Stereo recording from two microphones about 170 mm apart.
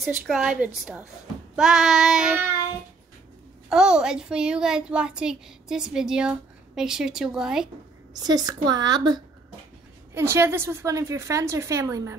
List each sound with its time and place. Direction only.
0.0 s a woman's voice: 5° right (ahead or behind)
3.6 s a woman's voice: 5° right (ahead or behind)
8.1 s a woman's voice: 25° right (ahead or behind)